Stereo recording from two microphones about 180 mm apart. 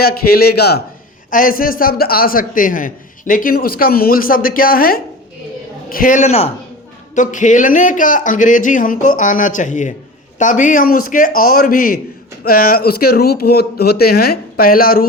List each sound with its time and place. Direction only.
0.0 s speech: 60° left (ahead or behind)
1.3 s a man's voice: 50° left (ahead or behind)